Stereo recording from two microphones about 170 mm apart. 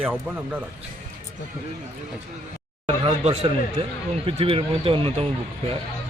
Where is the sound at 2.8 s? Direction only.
35° right (ahead or behind).